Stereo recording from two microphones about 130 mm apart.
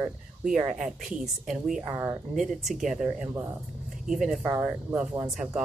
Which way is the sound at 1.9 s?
20° right (ahead or behind).